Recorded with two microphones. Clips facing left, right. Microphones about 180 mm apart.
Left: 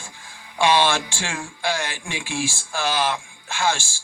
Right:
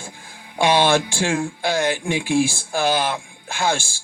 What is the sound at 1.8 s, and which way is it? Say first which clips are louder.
Speech: right 10 dB; 55° right (ahead or behind).